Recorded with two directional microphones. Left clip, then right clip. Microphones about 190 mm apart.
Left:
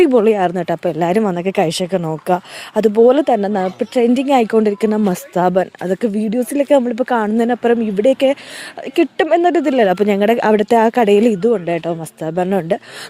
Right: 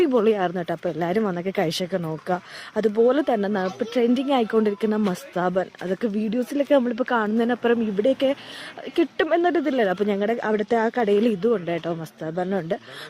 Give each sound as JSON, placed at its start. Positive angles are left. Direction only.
{"t": 0.0, "sound": "speech", "side_deg": 40}